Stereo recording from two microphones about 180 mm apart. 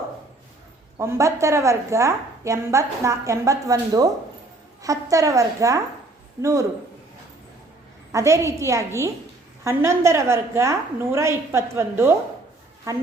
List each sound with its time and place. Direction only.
0.9 s a woman's voice: 15° right (ahead or behind)
8.1 s a woman's voice: 15° right (ahead or behind)